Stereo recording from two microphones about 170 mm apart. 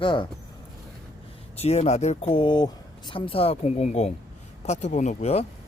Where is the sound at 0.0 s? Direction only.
30° left (ahead or behind).